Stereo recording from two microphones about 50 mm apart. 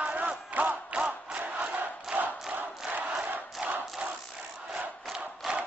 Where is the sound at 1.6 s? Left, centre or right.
Right.